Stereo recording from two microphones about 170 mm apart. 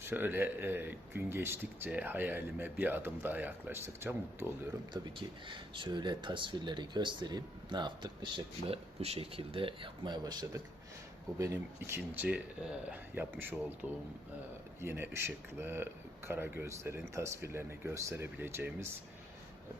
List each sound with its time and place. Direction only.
0.0 s speech: 10° right (ahead or behind)
4.9 s speech: 25° right (ahead or behind)
14.8 s speech: 15° right (ahead or behind)